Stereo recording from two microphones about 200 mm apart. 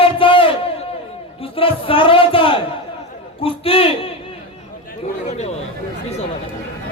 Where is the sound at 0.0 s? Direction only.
25° left (ahead or behind).